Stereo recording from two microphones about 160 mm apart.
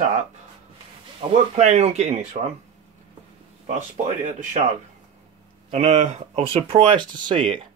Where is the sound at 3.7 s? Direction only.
50° right (ahead or behind).